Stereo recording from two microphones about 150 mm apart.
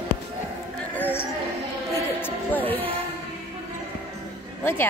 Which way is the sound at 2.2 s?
10° left (ahead or behind).